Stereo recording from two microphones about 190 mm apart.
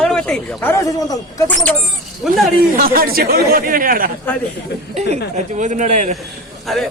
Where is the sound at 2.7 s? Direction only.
50° right (ahead or behind).